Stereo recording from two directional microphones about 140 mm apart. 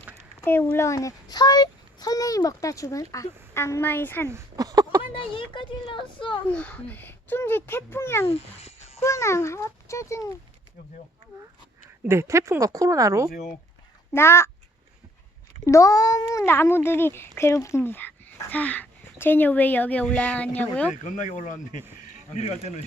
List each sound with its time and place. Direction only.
0.4 s a child's voice: 15° left (ahead or behind)
4.3 s a sound: 25° right (ahead or behind)
5.1 s speech: 40° left (ahead or behind)
6.5 s speech: 10° left (ahead or behind)
8.3 s speech: 45° left (ahead or behind)
9.0 s a child's voice: 20° left (ahead or behind)
12.0 s a woman's voice: 20° right (ahead or behind)
14.1 s speech: 20° left (ahead or behind)
15.6 s speech: 20° left (ahead or behind)
20.9 s speech: 60° left (ahead or behind)
22.1 s speech: 50° left (ahead or behind)